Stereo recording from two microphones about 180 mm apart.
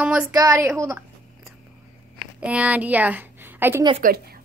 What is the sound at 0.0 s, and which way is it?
Speech, 5° right (ahead or behind).